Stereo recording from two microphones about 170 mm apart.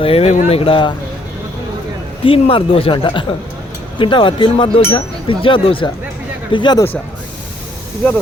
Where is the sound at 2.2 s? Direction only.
30° left (ahead or behind).